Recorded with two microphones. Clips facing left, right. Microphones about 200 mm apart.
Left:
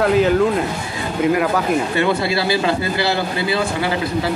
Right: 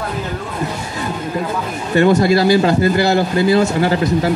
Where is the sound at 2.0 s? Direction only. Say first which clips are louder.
Right 6 dB; 45° right (ahead or behind).